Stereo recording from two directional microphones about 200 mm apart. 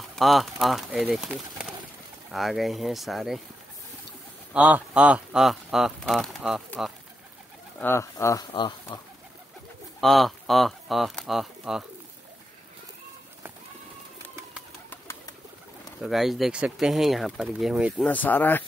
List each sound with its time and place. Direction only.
0.1 s speech: centre (ahead or behind)
4.6 s speech: 5° right (ahead or behind)
7.8 s speech: 15° left (ahead or behind)
9.9 s speech: centre (ahead or behind)
14.9 s pigeon: 15° left (ahead or behind)
16.0 s speech: centre (ahead or behind)
18.0 s speech: 10° left (ahead or behind)